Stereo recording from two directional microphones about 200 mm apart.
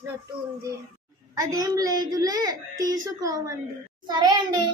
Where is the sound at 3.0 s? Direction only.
15° right (ahead or behind).